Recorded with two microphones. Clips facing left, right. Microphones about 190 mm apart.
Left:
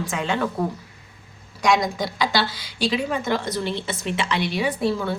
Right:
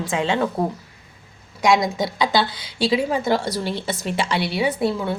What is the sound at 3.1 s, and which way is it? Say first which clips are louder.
A woman's voice: right 3 dB; 35° right (ahead or behind).